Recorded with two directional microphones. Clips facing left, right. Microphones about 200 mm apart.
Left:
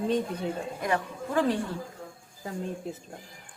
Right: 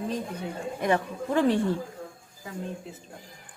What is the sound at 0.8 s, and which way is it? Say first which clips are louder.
Speech: right 5 dB; 25° right (ahead or behind).